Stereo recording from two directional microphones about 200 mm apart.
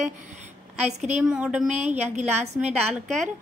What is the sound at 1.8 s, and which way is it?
Speech, 35° right (ahead or behind).